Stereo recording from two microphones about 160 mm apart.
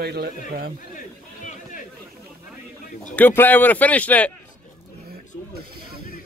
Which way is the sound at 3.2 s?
10° left (ahead or behind).